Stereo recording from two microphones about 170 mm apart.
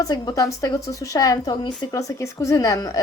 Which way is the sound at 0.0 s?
25° left (ahead or behind).